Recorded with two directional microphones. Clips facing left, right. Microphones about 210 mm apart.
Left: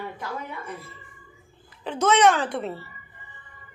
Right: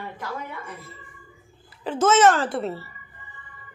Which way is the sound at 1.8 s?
5° right (ahead or behind).